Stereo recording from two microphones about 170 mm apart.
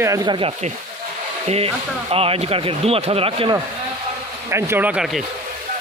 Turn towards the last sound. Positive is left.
turn(degrees=-5)  # may be behind; listen again after turning